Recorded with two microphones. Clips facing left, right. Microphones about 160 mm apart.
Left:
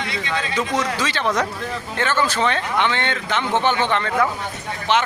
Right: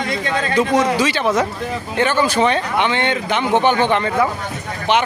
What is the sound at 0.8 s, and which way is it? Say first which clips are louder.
Speech: right 6 dB; 10° right (ahead or behind).